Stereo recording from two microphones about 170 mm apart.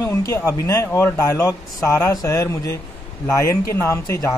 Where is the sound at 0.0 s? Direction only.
15° left (ahead or behind).